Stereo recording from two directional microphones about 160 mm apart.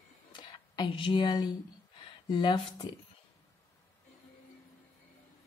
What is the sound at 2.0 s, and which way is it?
Speech, 30° left (ahead or behind).